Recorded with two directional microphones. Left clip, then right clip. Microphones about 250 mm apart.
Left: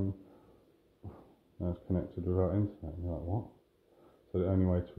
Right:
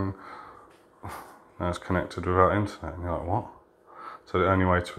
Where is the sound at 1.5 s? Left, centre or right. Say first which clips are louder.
Right 10 dB; right.